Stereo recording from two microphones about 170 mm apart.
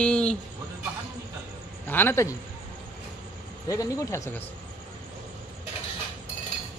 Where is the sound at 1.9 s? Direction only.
10° left (ahead or behind).